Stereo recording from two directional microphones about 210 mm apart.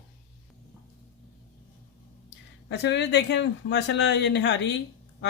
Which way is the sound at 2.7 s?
55° left (ahead or behind).